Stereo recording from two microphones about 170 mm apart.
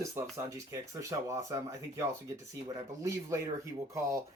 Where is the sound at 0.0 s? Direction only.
20° right (ahead or behind).